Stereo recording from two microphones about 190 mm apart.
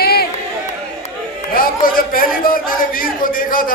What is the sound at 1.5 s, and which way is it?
A man's voice, 50° left (ahead or behind).